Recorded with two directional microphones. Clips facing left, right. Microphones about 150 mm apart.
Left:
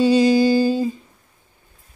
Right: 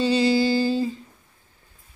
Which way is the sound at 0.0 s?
15° left (ahead or behind).